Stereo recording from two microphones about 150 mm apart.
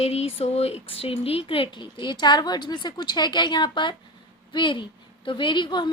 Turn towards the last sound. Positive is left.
turn(degrees=30)  # may be behind; listen again after turning